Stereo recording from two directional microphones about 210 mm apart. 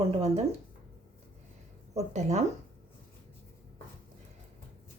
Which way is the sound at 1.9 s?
30° right (ahead or behind).